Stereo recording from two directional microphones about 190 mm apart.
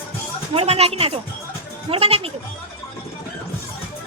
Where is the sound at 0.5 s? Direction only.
30° right (ahead or behind).